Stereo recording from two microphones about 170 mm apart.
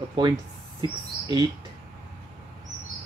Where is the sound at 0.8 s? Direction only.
25° right (ahead or behind).